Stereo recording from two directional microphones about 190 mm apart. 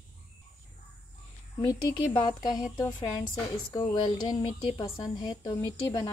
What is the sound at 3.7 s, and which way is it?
Speech, 25° left (ahead or behind).